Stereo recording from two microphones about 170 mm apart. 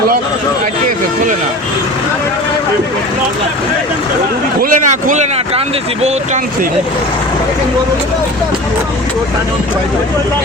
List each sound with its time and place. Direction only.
4.6 s speech: 50° right (ahead or behind)